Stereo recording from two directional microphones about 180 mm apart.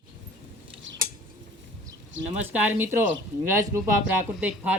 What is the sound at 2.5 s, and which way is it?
Speech, 10° right (ahead or behind).